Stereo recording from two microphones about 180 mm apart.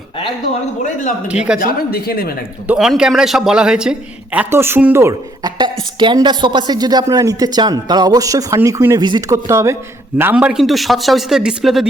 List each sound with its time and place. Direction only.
1.3 s a man's voice: 5° right (ahead or behind)
1.5 s speech: 55° left (ahead or behind)
2.6 s a man's voice: centre (ahead or behind)